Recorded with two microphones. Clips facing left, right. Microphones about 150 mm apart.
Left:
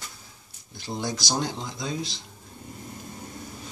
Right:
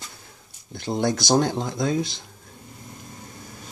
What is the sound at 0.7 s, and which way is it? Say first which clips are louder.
Speech: right 8 dB; 55° right (ahead or behind).